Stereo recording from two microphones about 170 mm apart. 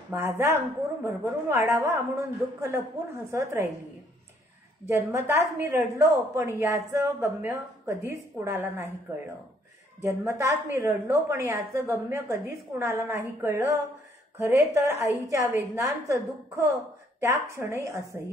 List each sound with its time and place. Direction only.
0.1 s a woman's voice: 15° right (ahead or behind)
4.8 s a woman's voice: 15° right (ahead or behind)
10.0 s a woman's voice: 15° right (ahead or behind)